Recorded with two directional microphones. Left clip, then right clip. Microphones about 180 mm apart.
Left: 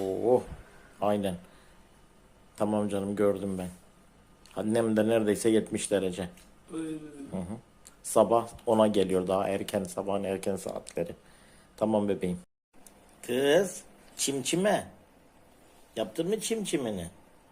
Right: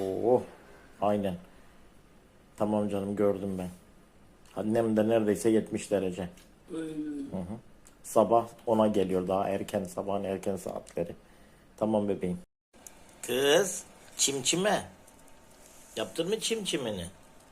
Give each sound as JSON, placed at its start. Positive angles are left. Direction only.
{"t": 0.0, "sound": "a sound", "side_deg": 5}
{"t": 0.9, "sound": "a man's voice", "side_deg": 5}
{"t": 2.6, "sound": "speech", "side_deg": 10}
{"t": 12.8, "sound": "a sound", "side_deg": 20}
{"t": 14.2, "sound": "speech", "side_deg": 20}
{"t": 16.0, "sound": "speech", "side_deg": 20}